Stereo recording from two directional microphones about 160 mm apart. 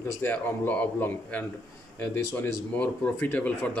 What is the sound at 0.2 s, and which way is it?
A man's voice, 10° left (ahead or behind).